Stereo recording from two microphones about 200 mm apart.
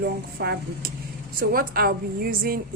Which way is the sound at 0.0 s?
55° right (ahead or behind).